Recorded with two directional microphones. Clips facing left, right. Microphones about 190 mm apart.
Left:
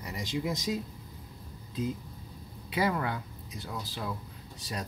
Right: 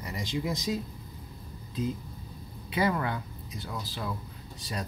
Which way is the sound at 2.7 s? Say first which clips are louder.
Right 1 dB; 5° left (ahead or behind).